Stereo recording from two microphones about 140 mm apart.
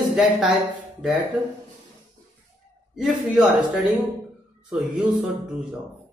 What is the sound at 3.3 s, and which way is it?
Speech, 5° right (ahead or behind).